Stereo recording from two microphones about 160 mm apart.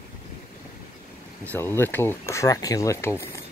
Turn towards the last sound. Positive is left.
turn(degrees=15)  # may be behind; listen again after turning